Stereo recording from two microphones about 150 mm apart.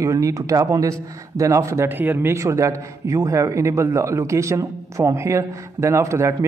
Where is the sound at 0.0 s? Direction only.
20° right (ahead or behind).